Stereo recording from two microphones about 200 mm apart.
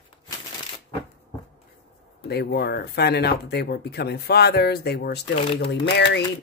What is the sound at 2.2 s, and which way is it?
Speech, 55° left (ahead or behind).